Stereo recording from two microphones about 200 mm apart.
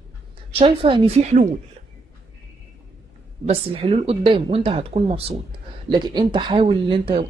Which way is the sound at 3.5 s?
30° right (ahead or behind).